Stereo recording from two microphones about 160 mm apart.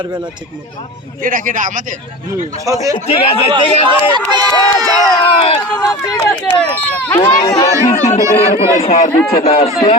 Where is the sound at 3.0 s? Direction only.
35° left (ahead or behind).